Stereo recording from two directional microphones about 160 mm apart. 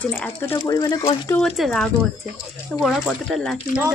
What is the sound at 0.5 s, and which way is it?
Speech, 20° left (ahead or behind).